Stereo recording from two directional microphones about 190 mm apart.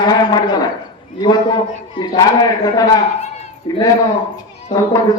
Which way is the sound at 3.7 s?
20° left (ahead or behind).